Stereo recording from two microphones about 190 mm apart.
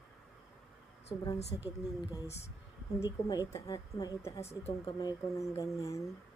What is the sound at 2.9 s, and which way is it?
Speech, 20° left (ahead or behind).